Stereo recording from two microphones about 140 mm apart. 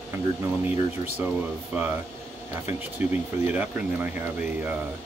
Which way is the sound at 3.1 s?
10° right (ahead or behind).